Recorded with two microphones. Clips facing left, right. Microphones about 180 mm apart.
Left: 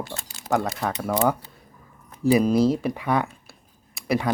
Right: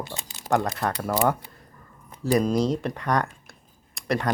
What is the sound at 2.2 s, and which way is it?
Speech, 5° left (ahead or behind).